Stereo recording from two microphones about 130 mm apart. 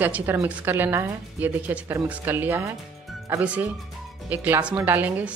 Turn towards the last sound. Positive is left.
turn(degrees=-15)  # may be behind; listen again after turning